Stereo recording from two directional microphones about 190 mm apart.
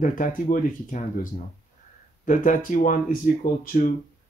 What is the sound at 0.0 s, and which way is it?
Speech, 45° left (ahead or behind).